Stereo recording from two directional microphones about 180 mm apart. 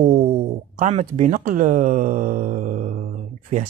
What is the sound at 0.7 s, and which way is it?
Speech, 40° right (ahead or behind).